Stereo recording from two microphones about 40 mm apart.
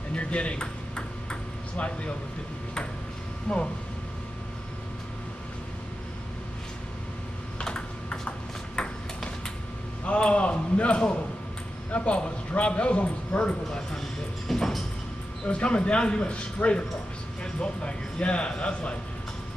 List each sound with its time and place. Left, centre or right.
0.1 s ping: left
3.5 s a man's voice: centre
7.6 s typing: left
8.7 s ping: left
10.0 s a man's voice: left
14.5 s a sound: centre
15.4 s a man's voice: left